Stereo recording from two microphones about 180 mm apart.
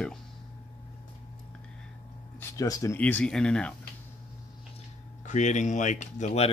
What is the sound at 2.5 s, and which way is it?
Speech, 20° left (ahead or behind).